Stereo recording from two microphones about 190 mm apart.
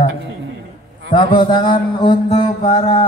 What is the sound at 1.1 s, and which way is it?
Mantra, 25° left (ahead or behind).